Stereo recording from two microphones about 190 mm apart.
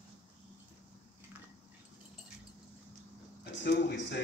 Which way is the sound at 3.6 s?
65° left (ahead or behind).